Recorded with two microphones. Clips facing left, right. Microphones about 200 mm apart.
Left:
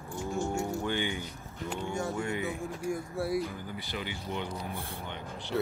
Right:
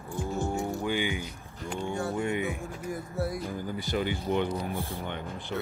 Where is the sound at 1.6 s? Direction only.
5° left (ahead or behind).